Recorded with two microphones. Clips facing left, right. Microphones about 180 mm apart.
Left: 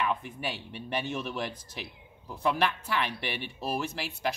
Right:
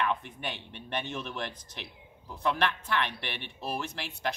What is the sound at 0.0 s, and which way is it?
Speech, 5° left (ahead or behind).